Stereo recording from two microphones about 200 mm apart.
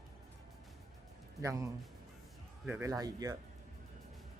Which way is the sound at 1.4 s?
15° right (ahead or behind).